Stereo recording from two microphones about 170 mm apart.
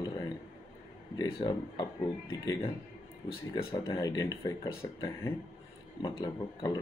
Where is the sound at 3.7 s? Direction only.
25° left (ahead or behind).